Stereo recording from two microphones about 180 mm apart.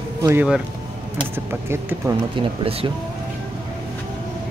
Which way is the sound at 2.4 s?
30° right (ahead or behind).